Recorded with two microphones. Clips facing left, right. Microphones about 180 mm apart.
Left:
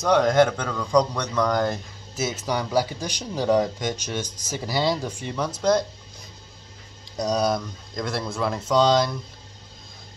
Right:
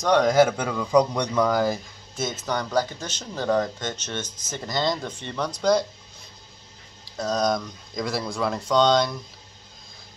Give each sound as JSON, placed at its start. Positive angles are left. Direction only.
{"t": 0.0, "sound": "a man's voice", "side_deg": 0}
{"t": 7.2, "sound": "speech", "side_deg": 10}